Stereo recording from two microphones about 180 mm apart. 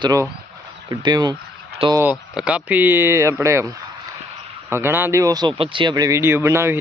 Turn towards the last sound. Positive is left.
turn(degrees=-15)  # may be behind; listen again after turning